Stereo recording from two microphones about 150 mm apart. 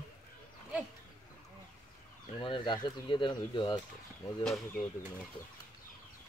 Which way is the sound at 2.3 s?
35° left (ahead or behind).